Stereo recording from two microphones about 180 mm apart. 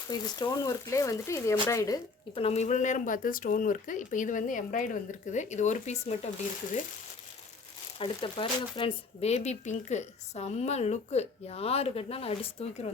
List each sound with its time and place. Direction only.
0.1 s speech: 20° left (ahead or behind)
2.3 s speech: 35° left (ahead or behind)
7.9 s speech: 30° left (ahead or behind)